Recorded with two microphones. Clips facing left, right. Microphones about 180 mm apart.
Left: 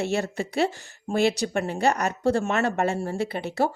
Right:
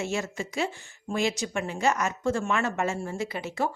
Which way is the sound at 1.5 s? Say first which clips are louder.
Left 3 dB; 35° left (ahead or behind).